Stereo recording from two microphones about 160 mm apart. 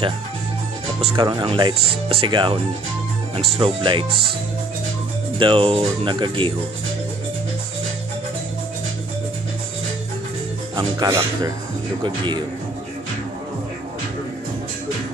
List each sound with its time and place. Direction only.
1.1 s speech: 25° right (ahead or behind)
5.4 s speech: 35° right (ahead or behind)
10.8 s speech: 20° right (ahead or behind)